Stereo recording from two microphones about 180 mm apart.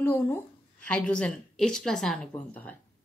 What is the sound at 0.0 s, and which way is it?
A woman's voice, 10° left (ahead or behind).